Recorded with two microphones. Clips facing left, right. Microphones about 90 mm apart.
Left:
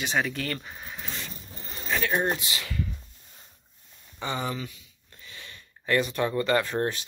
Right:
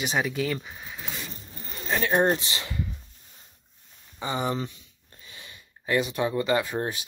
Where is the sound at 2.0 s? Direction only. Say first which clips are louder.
Right 6 dB; 35° right (ahead or behind).